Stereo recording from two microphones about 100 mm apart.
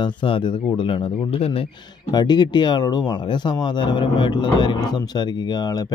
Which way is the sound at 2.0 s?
45° left (ahead or behind).